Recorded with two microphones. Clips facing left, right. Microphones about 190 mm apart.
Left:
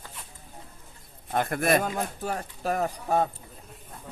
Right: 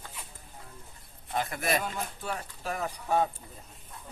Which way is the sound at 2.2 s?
45° left (ahead or behind).